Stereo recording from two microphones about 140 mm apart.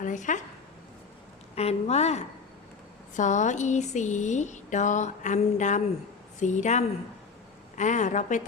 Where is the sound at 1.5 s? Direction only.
50° left (ahead or behind).